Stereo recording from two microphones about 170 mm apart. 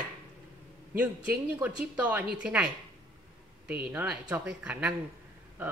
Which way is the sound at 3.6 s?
65° right (ahead or behind).